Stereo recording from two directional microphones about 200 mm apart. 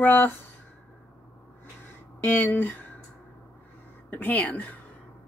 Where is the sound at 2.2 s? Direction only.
10° left (ahead or behind).